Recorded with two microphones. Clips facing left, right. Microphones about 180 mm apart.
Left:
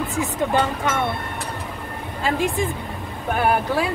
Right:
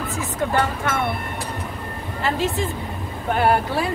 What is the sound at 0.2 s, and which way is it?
Speech, 20° left (ahead or behind).